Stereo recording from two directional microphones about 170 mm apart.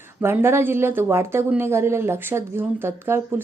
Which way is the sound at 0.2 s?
15° right (ahead or behind).